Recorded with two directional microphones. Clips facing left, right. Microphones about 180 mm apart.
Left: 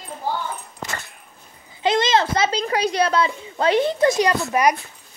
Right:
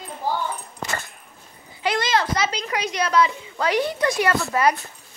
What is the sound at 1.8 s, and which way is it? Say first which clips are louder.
A woman's voice: left 4 dB; 20° left (ahead or behind).